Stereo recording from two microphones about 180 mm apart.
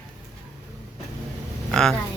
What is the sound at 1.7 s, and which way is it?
Speech, centre (ahead or behind).